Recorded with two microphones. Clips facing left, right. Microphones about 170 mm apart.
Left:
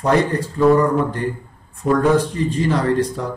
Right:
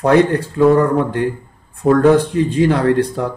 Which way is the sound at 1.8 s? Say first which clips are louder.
Right 5 dB; 60° right (ahead or behind).